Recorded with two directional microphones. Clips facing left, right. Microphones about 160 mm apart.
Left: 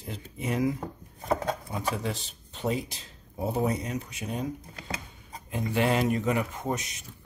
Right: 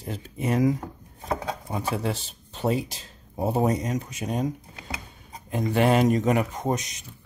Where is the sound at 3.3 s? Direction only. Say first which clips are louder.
Right 4 dB; 50° right (ahead or behind).